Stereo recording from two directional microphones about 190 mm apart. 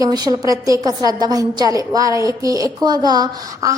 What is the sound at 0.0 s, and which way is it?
A woman's voice, 20° right (ahead or behind).